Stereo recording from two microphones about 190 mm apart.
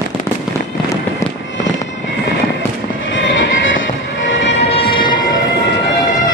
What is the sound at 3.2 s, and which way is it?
Music, 75° left (ahead or behind).